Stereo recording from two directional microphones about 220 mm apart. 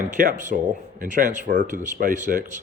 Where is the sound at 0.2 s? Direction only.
35° right (ahead or behind).